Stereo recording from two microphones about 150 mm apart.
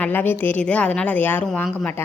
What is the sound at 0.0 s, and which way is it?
A woman's voice, 10° left (ahead or behind).